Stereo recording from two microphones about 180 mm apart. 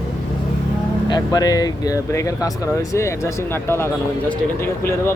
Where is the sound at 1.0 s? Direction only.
20° left (ahead or behind).